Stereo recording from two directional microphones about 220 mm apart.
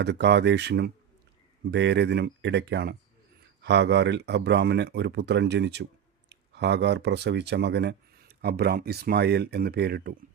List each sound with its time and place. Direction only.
0.0 s speech: 50° right (ahead or behind)